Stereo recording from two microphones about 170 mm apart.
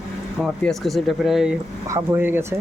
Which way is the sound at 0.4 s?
Centre (ahead or behind).